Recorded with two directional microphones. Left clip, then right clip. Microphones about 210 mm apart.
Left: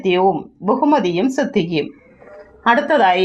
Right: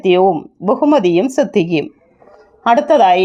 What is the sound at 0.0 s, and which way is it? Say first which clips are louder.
A woman's voice: right 4 dB; 50° right (ahead or behind).